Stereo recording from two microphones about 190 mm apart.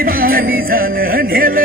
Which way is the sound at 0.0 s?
50° right (ahead or behind).